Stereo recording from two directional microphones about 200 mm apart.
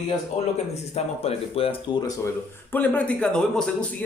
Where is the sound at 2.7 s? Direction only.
10° left (ahead or behind).